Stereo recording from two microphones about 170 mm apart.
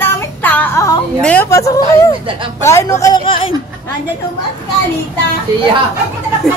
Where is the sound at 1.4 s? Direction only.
20° left (ahead or behind).